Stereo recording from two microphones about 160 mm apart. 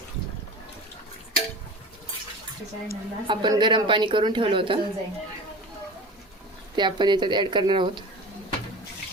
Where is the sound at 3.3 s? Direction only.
30° right (ahead or behind).